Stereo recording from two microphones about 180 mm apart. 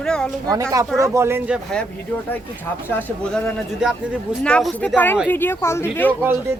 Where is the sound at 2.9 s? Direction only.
5° left (ahead or behind).